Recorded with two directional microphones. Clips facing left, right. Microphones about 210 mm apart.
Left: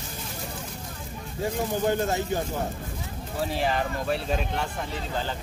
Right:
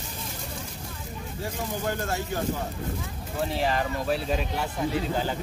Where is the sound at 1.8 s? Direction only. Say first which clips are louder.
Left 5 dB; 20° left (ahead or behind).